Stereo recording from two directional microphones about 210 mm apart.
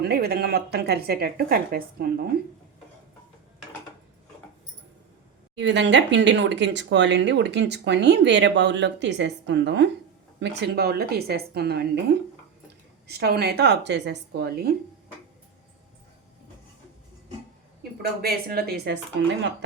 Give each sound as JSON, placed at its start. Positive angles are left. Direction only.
{"t": 0.0, "sound": "speech", "side_deg": -50}
{"t": 5.5, "sound": "speech", "side_deg": -60}
{"t": 13.1, "sound": "speech", "side_deg": -50}
{"t": 18.2, "sound": "speech", "side_deg": -45}